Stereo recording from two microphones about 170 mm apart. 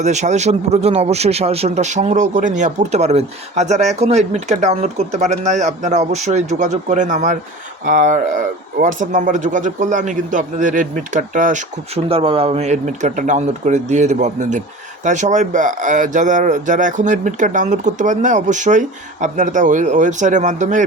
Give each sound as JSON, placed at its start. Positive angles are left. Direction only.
{"t": 0.0, "sound": "a man's voice", "side_deg": -45}
{"t": 12.0, "sound": "speech", "side_deg": -30}